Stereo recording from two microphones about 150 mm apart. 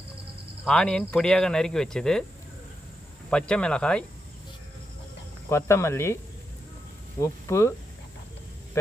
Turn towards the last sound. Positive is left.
turn(degrees=20)  # may be behind; listen again after turning